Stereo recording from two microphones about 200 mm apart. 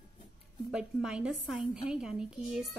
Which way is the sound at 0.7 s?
5° right (ahead or behind).